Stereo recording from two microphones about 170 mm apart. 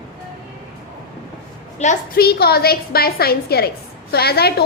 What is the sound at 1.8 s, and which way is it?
Speech, 40° left (ahead or behind).